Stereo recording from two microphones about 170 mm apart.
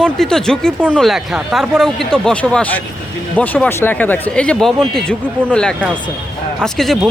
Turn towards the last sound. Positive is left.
turn(degrees=0)  # may be behind; listen again after turning